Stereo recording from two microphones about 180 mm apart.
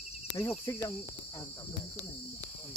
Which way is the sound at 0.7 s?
15° left (ahead or behind).